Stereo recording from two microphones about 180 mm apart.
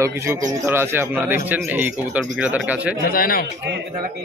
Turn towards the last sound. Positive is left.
turn(degrees=55)  # may be behind; listen again after turning